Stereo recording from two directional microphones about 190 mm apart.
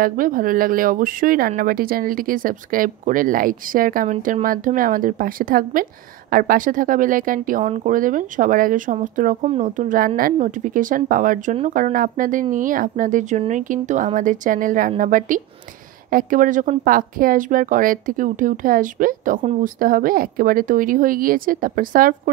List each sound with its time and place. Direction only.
0.0 s a woman's voice: 45° right (ahead or behind)